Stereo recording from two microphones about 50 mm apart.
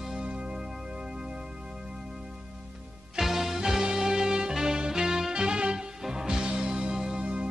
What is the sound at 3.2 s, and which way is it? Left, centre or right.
Music, centre.